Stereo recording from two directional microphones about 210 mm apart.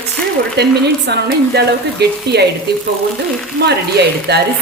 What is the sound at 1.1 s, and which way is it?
Speech, 55° right (ahead or behind).